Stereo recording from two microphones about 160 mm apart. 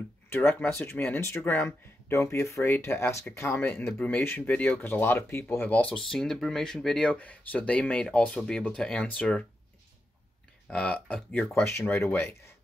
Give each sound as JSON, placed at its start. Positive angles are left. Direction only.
{"t": 0.3, "sound": "speech", "side_deg": 15}
{"t": 10.7, "sound": "speech", "side_deg": 5}